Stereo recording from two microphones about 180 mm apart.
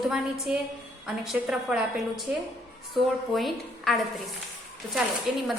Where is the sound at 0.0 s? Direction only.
Centre (ahead or behind).